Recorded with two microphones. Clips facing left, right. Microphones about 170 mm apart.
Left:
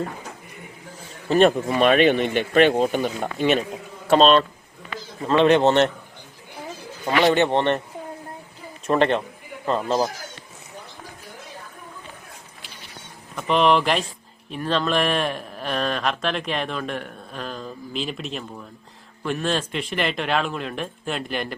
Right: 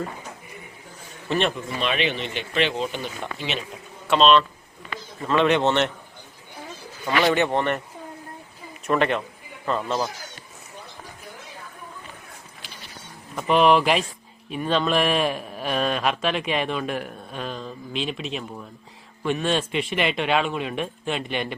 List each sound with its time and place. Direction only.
1.3 s speech: 45° left (ahead or behind)
7.0 s a man's voice: 30° left (ahead or behind)
8.9 s speech: 30° left (ahead or behind)
13.3 s speech: 5° right (ahead or behind)